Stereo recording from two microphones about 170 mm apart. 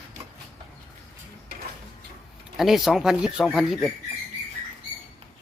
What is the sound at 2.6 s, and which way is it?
Speech, centre (ahead or behind).